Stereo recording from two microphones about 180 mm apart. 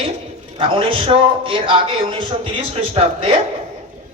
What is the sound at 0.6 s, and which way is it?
A man's voice, 30° right (ahead or behind).